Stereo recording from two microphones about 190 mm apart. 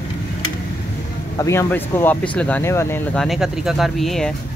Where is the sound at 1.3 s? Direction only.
15° left (ahead or behind).